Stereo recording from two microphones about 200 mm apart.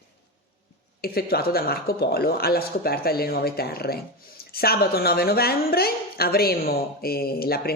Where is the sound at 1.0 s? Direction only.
50° left (ahead or behind).